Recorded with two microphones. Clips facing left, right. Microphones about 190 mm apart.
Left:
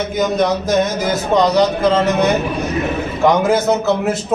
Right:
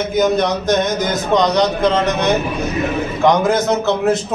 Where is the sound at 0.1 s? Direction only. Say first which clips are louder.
Right 1 dB; centre (ahead or behind).